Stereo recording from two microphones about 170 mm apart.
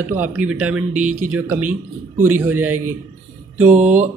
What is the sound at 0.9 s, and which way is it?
Speech, 45° right (ahead or behind).